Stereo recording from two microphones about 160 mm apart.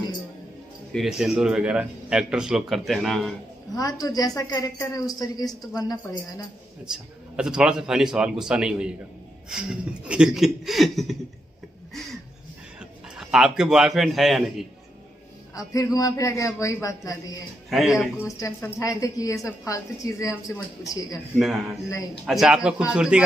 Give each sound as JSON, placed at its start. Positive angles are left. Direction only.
{"t": 0.9, "sound": "a man's voice", "side_deg": 0}
{"t": 3.7, "sound": "a woman's voice", "side_deg": 25}
{"t": 6.9, "sound": "a man's voice", "side_deg": -5}
{"t": 13.1, "sound": "a man's voice", "side_deg": -5}
{"t": 15.5, "sound": "a woman's voice", "side_deg": 20}
{"t": 17.6, "sound": "speech", "side_deg": 0}
{"t": 18.2, "sound": "a woman's voice", "side_deg": 20}
{"t": 22.2, "sound": "a man's voice", "side_deg": 0}